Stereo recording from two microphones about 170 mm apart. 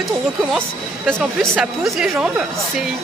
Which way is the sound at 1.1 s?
5° left (ahead or behind).